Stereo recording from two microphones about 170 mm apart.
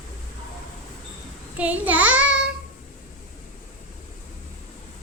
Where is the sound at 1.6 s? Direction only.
10° right (ahead or behind).